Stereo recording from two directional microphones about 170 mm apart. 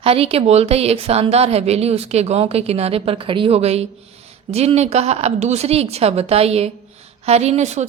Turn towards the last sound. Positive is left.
turn(degrees=-40)  # may be behind; listen again after turning